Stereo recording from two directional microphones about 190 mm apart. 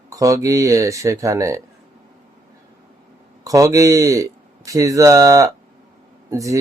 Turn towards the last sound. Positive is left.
turn(degrees=-15)  # may be behind; listen again after turning